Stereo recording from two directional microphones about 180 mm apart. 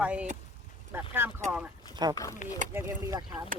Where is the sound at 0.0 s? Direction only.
5° right (ahead or behind).